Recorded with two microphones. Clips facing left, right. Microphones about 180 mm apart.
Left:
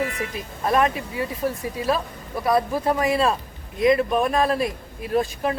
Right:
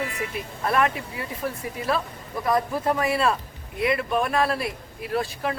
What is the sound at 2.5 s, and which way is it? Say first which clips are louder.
A man's voice: left 2 dB; 15° left (ahead or behind).